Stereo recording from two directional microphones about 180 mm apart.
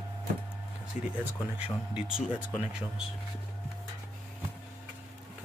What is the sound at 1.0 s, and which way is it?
Speech, 45° left (ahead or behind).